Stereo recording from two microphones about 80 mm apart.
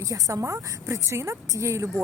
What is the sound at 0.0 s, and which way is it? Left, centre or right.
A woman's voice, right.